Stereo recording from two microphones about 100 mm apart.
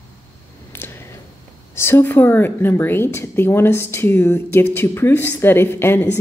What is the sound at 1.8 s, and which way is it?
Speech, 25° left (ahead or behind).